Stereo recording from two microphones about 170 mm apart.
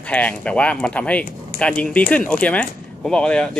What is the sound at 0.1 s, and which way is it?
Speech, 10° left (ahead or behind).